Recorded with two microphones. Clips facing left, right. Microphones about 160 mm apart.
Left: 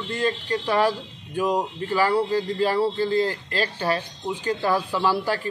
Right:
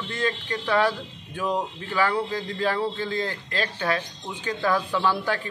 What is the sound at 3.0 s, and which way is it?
Speech, 35° left (ahead or behind).